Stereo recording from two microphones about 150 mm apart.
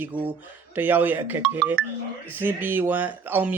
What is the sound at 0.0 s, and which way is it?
Speech, 10° right (ahead or behind).